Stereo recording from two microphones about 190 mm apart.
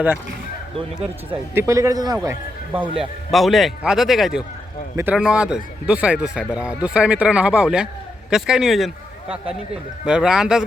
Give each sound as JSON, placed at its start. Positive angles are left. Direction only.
{"t": 1.3, "sound": "speech", "side_deg": -15}
{"t": 3.0, "sound": "a man's voice", "side_deg": 0}
{"t": 10.1, "sound": "a man's voice", "side_deg": -5}